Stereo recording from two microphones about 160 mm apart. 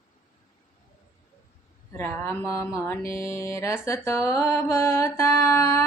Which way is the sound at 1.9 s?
15° left (ahead or behind).